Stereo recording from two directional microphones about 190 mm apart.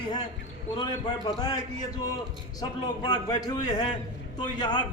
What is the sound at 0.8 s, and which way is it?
Speech, 20° left (ahead or behind).